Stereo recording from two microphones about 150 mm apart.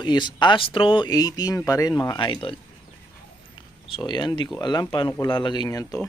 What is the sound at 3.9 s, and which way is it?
Speech, 30° left (ahead or behind).